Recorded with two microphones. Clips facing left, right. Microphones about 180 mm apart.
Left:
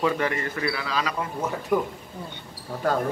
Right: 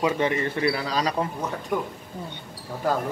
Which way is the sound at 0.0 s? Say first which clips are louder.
Right 1 dB; 20° right (ahead or behind).